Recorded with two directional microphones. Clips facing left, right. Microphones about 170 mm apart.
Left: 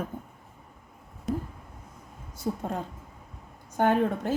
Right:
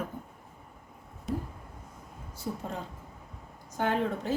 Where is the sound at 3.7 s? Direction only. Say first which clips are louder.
Left 5 dB; 55° left (ahead or behind).